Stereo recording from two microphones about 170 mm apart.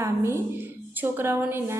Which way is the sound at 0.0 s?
15° right (ahead or behind).